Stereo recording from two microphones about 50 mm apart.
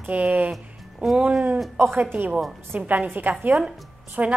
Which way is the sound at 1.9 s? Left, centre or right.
Right.